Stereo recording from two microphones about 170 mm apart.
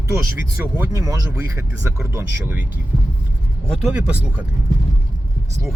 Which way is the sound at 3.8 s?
5° right (ahead or behind).